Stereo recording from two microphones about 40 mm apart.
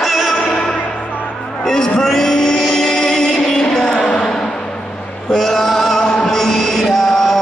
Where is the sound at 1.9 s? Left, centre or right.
Centre.